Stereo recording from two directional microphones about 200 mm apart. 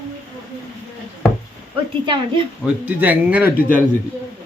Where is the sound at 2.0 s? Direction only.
25° right (ahead or behind).